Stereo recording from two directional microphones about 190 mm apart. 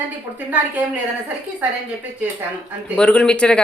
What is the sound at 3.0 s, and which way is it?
Speech, 5° left (ahead or behind).